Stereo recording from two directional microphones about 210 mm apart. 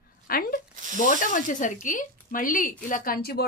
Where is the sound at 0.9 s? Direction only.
40° left (ahead or behind).